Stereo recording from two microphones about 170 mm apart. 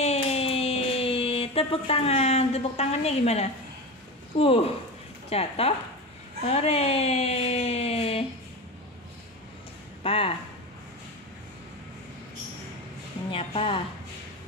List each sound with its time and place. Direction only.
0.0 s a sound: 40° left (ahead or behind)
4.4 s speech: 35° left (ahead or behind)
10.0 s speech: 30° left (ahead or behind)
13.3 s speech: 35° left (ahead or behind)